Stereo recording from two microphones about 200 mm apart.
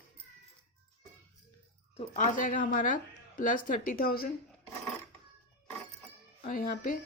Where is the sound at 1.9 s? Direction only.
35° left (ahead or behind).